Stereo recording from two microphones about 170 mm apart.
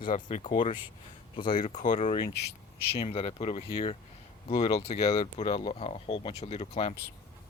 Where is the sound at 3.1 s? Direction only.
35° left (ahead or behind).